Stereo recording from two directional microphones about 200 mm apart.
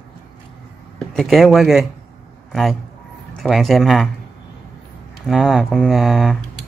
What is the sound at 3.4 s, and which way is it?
Speech, centre (ahead or behind).